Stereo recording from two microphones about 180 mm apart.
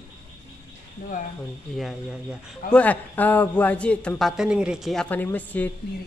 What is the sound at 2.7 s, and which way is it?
A man's voice, 10° left (ahead or behind).